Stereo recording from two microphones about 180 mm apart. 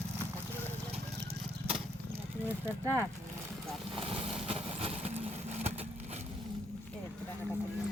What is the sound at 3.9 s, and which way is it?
Vehicle, 30° right (ahead or behind).